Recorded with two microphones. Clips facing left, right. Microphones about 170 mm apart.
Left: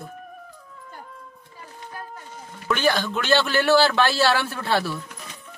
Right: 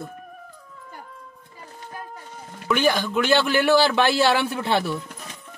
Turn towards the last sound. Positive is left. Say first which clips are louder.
# right 1 dB
turn(degrees=-20)  # may be behind; listen again after turning